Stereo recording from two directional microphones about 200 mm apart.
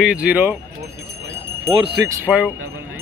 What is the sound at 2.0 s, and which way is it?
Speech, 10° right (ahead or behind).